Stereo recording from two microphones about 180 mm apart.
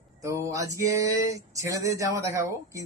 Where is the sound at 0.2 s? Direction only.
15° right (ahead or behind).